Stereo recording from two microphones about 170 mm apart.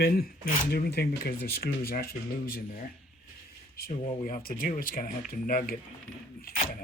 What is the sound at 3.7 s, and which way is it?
Speech, 60° left (ahead or behind).